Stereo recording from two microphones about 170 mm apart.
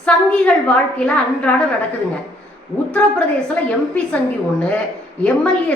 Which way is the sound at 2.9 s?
10° left (ahead or behind).